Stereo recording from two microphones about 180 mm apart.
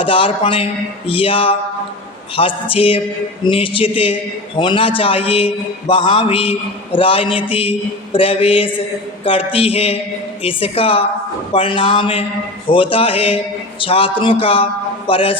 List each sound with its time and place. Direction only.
0.0 s a man's voice: 30° left (ahead or behind)